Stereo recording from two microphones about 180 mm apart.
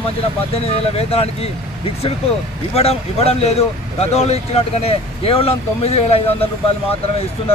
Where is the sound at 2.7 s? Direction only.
35° left (ahead or behind).